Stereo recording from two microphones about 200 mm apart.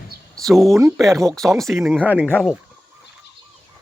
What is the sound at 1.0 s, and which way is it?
Speech, centre (ahead or behind).